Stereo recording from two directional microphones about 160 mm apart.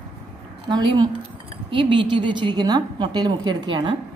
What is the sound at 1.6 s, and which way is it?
A woman's voice, 30° right (ahead or behind).